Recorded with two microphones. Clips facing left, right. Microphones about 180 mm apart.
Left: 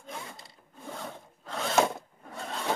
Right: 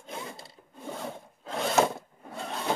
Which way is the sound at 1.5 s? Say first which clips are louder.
Right 3 dB; 15° right (ahead or behind).